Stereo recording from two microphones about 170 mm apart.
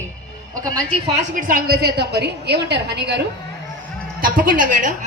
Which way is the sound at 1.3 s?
55° right (ahead or behind).